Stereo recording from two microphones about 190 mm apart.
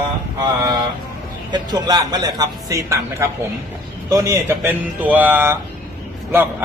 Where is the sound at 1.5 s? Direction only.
20° right (ahead or behind).